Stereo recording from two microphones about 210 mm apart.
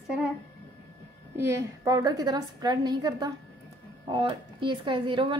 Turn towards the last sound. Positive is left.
turn(degrees=-20)  # may be behind; listen again after turning